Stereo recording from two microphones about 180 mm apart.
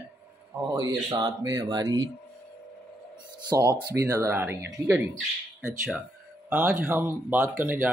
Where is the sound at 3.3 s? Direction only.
20° right (ahead or behind).